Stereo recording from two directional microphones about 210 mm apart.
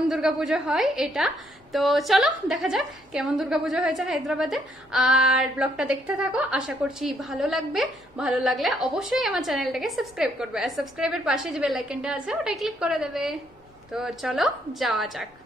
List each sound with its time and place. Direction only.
0.1 s a woman's voice: centre (ahead or behind)